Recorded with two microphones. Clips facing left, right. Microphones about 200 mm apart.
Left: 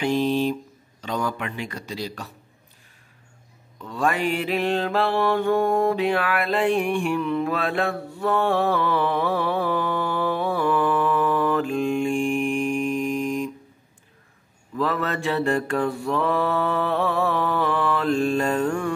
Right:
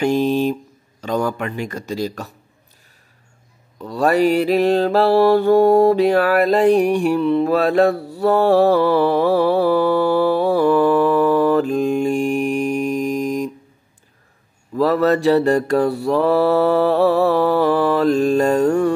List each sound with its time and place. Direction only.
0.0 s a sound: 45° right (ahead or behind)
1.0 s speech: 45° right (ahead or behind)
3.8 s mantra: 40° right (ahead or behind)
14.7 s mantra: 40° right (ahead or behind)